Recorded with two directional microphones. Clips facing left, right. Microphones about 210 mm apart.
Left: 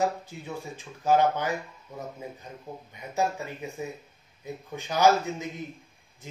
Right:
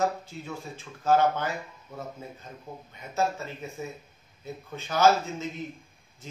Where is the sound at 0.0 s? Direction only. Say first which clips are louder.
Even; 15° left (ahead or behind).